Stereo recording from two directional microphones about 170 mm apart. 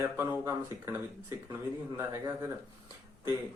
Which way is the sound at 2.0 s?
15° right (ahead or behind).